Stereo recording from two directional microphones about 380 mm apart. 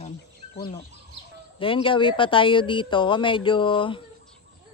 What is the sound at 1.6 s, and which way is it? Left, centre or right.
Speech, centre.